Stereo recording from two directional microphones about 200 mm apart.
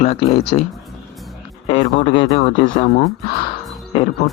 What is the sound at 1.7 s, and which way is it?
Speech, 35° left (ahead or behind).